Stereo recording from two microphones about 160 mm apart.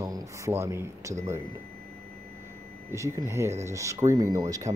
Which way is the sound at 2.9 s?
20° right (ahead or behind).